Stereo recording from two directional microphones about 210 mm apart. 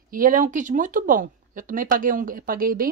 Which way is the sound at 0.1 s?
40° right (ahead or behind).